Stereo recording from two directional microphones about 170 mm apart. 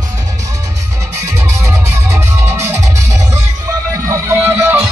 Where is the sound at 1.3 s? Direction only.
15° right (ahead or behind).